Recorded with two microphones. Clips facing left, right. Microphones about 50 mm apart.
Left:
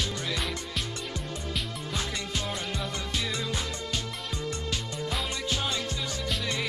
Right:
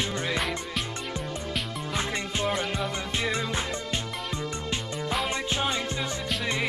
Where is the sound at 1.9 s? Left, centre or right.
Right.